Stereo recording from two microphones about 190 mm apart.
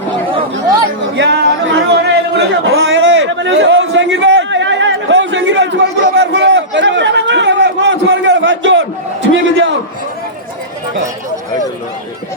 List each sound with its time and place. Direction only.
0.3 s chatter: 20° right (ahead or behind)
1.1 s speech: 65° right (ahead or behind)
1.9 s a sound: 60° right (ahead or behind)